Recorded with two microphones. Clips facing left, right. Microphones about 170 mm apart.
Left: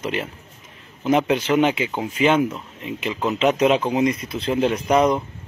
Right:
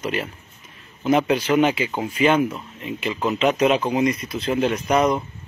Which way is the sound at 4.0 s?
25° left (ahead or behind).